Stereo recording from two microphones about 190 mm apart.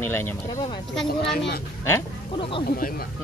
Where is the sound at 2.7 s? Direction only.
50° left (ahead or behind).